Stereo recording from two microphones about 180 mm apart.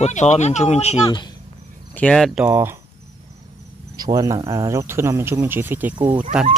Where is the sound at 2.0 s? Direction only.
5° left (ahead or behind).